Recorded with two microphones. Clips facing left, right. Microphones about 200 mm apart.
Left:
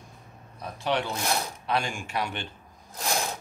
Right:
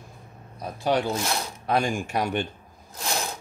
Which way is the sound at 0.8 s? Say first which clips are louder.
Right 4 dB; 40° right (ahead or behind).